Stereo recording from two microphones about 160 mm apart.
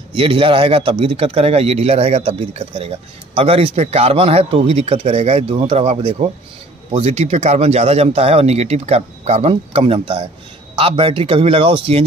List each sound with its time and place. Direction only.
0.1 s speech: 35° right (ahead or behind)